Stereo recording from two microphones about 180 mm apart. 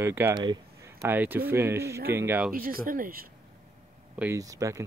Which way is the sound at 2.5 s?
50° right (ahead or behind).